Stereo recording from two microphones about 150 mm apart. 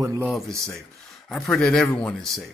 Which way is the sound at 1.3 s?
5° left (ahead or behind).